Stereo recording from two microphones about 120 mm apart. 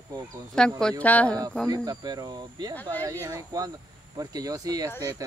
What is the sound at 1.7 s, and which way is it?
Speech, 30° right (ahead or behind).